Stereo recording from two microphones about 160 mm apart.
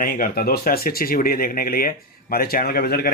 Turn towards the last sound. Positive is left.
turn(degrees=75)  # may be behind; listen again after turning